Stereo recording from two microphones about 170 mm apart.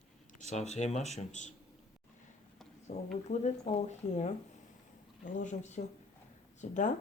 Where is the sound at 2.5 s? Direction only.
Centre (ahead or behind).